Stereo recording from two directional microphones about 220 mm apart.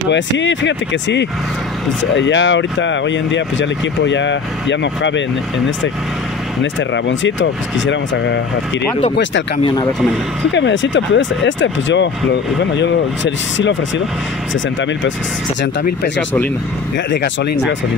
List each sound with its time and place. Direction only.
0.1 s speech: 55° left (ahead or behind)
6.6 s speech: 55° left (ahead or behind)
9.6 s speech: 20° left (ahead or behind)
10.5 s speech: 55° left (ahead or behind)
15.8 s speech: 45° left (ahead or behind)